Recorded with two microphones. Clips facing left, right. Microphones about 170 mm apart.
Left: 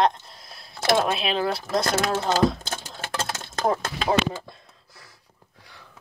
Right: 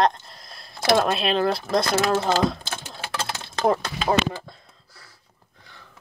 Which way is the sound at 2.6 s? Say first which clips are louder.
Even; 45° left (ahead or behind).